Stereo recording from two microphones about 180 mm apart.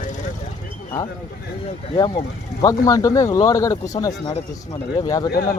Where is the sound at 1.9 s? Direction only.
25° left (ahead or behind).